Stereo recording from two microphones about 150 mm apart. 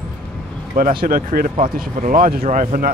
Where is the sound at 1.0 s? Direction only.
70° right (ahead or behind).